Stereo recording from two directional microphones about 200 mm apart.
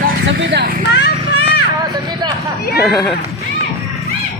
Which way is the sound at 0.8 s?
55° left (ahead or behind).